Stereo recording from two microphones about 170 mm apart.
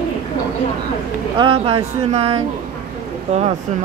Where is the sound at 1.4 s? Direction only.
30° right (ahead or behind).